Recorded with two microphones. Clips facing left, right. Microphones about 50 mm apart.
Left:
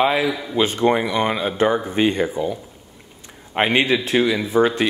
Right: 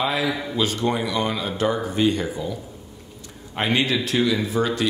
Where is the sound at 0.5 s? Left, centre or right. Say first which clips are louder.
Left 8 dB; left.